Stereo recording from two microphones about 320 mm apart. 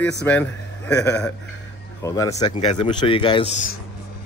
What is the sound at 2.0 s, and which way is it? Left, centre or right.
Speech, centre.